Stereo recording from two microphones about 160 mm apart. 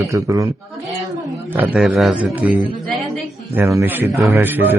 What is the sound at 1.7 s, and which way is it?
Speech, centre (ahead or behind).